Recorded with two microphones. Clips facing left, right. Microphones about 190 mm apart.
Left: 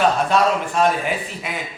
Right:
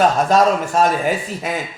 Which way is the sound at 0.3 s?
40° right (ahead or behind).